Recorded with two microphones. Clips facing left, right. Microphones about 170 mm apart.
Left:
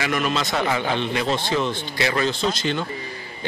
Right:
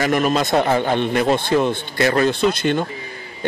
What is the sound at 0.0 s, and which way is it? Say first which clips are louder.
Speech: right 6 dB; 45° right (ahead or behind).